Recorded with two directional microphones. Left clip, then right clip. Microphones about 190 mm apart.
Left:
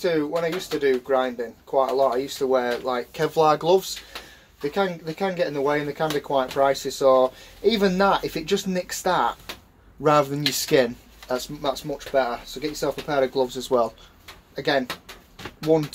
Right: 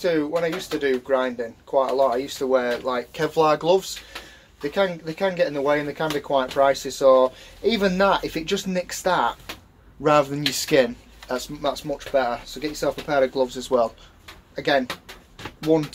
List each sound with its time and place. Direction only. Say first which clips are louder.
0.0 s speech: right 1 dB; 20° left (ahead or behind)